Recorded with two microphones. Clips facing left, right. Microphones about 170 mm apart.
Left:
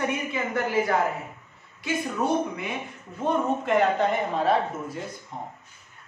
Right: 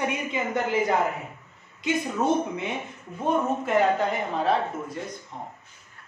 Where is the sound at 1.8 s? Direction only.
25° right (ahead or behind).